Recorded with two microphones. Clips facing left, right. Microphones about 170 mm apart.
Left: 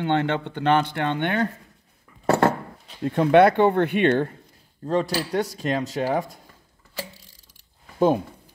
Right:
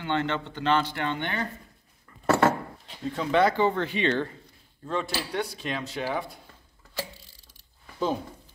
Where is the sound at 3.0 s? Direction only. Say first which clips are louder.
Left 7 dB; 60° left (ahead or behind).